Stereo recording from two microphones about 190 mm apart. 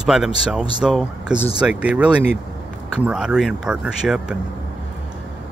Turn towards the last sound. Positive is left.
turn(degrees=-5)  # may be behind; listen again after turning